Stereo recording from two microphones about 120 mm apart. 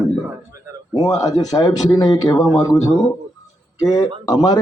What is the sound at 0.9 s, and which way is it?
Speech, 30° left (ahead or behind).